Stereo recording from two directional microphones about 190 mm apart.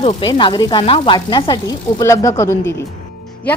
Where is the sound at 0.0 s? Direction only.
30° left (ahead or behind).